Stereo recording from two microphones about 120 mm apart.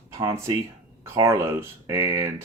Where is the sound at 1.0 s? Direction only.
25° right (ahead or behind).